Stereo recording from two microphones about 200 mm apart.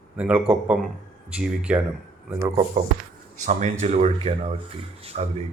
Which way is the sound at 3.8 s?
35° right (ahead or behind).